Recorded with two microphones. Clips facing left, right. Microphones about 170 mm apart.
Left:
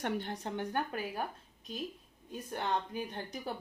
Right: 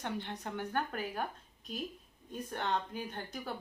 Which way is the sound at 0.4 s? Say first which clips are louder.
Right 2 dB; 20° left (ahead or behind).